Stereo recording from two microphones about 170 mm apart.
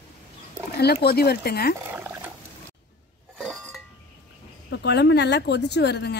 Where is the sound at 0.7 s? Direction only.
70° left (ahead or behind).